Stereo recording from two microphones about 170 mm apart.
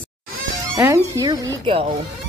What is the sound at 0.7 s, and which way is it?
Speech, 15° right (ahead or behind).